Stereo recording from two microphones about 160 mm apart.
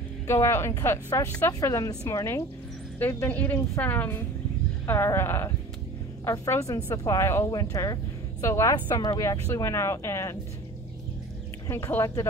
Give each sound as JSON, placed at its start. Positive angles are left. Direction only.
{"t": 0.3, "sound": "a woman's voice", "side_deg": 15}
{"t": 11.6, "sound": "a woman's voice", "side_deg": 15}